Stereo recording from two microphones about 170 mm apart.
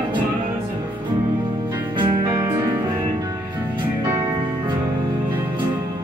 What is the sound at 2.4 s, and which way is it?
Music, 15° right (ahead or behind).